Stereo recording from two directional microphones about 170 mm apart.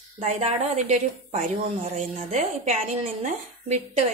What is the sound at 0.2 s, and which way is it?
A woman's voice, 40° right (ahead or behind).